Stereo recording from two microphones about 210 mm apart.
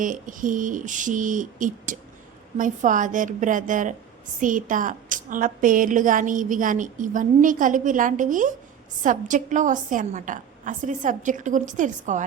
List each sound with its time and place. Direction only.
0.0 s a woman's voice: 40° right (ahead or behind)